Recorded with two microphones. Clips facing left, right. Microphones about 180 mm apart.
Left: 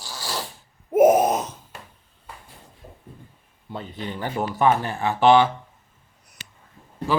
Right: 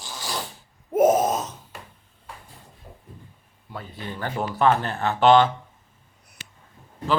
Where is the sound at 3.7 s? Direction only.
20° left (ahead or behind).